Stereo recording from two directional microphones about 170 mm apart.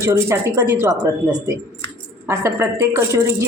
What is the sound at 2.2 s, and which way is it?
Speech, 15° right (ahead or behind).